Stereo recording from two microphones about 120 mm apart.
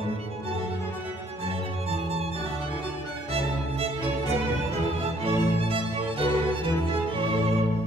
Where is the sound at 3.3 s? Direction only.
55° right (ahead or behind).